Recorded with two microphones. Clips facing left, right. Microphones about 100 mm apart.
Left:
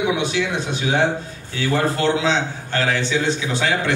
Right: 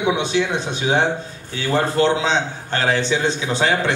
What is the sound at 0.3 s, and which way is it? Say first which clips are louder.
Speech: right 3 dB; 30° right (ahead or behind).